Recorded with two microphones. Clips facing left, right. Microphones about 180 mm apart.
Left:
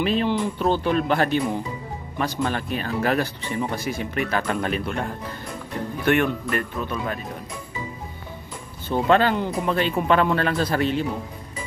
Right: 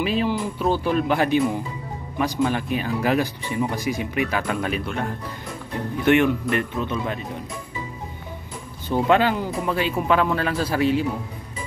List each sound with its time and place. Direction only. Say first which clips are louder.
0.0 s speech: left 1 dB; 5° right (ahead or behind)
6.0 s speech: right 3 dB; 20° right (ahead or behind)
8.8 s speech: even; 15° right (ahead or behind)